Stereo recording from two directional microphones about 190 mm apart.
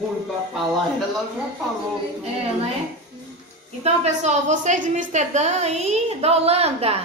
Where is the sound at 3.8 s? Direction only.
35° right (ahead or behind).